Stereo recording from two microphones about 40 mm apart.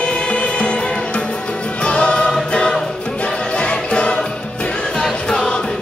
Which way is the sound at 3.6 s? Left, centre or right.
Left.